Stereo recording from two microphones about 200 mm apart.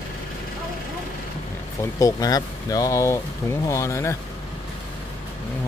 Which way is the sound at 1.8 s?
15° left (ahead or behind).